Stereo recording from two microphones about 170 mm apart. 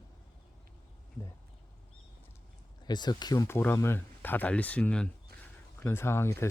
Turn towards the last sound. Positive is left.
turn(degrees=15)  # may be behind; listen again after turning